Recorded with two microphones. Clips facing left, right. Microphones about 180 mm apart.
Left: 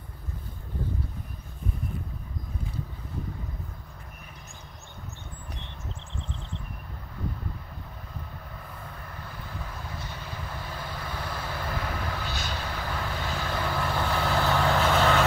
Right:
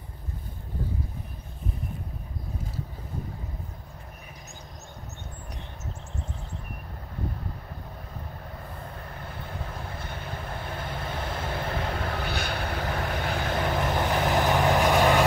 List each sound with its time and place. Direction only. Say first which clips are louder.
9.9 s vehicle: right 2 dB; 55° right (ahead or behind)
10.7 s vehicle: right 4 dB; 25° right (ahead or behind)
12.2 s vehicle: right 4 dB; 60° right (ahead or behind)
12.8 s vehicle: right 3 dB; 20° right (ahead or behind)